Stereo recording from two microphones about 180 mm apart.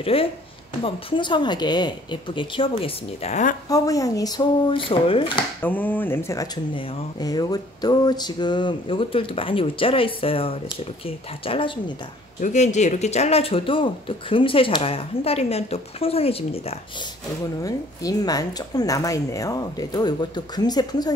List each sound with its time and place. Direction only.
0.0 s speech: 30° left (ahead or behind)
3.6 s speech: 20° left (ahead or behind)
5.6 s speech: 10° left (ahead or behind); by 11.8 s 30° left (ahead or behind)
12.4 s speech: 40° left (ahead or behind)
17.6 s speech: 20° left (ahead or behind)